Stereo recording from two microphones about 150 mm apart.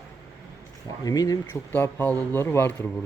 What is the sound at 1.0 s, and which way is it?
Speech, 25° left (ahead or behind).